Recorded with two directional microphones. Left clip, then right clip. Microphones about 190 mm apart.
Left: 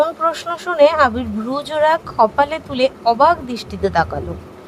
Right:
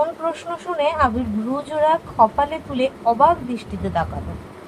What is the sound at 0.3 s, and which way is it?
Speech, 50° left (ahead or behind).